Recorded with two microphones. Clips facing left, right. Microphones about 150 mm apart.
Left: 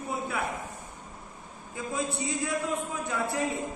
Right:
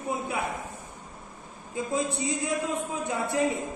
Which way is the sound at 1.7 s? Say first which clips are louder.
Right 3 dB; 20° right (ahead or behind).